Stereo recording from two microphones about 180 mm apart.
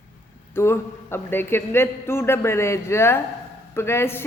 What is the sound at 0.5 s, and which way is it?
A man's voice, 15° left (ahead or behind).